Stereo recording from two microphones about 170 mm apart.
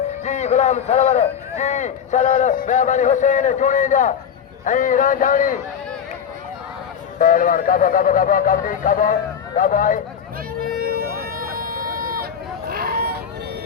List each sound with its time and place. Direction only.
0.3 s a man's voice: 40° left (ahead or behind)
7.2 s a man's voice: 55° left (ahead or behind)
10.6 s a sound: 60° right (ahead or behind)